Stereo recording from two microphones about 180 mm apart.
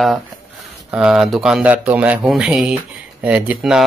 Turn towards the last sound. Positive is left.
turn(degrees=-5)  # may be behind; listen again after turning